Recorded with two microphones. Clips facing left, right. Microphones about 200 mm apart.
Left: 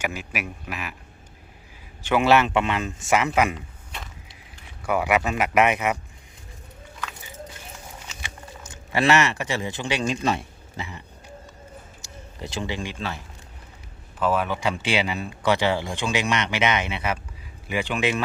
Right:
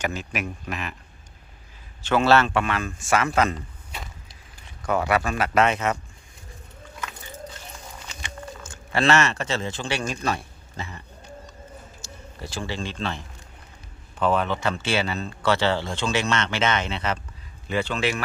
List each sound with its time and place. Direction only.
0.0 s speech: 10° left (ahead or behind)
2.0 s speech: 15° left (ahead or behind)
4.8 s speech: 10° left (ahead or behind)
8.6 s speech: 15° left (ahead or behind)
12.4 s speech: 20° left (ahead or behind)